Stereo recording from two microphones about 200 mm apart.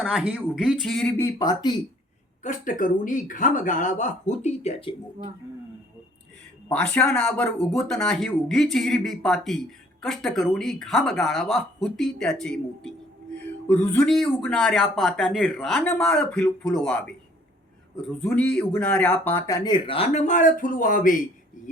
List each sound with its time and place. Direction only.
0.0 s speech: centre (ahead or behind); by 1.8 s 20° left (ahead or behind)
2.4 s speech: 40° left (ahead or behind)
6.7 s speech: 5° left (ahead or behind)
18.2 s speech: 5° left (ahead or behind); by 21.2 s 45° left (ahead or behind)